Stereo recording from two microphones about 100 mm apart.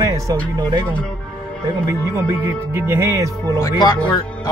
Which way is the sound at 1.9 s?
25° right (ahead or behind).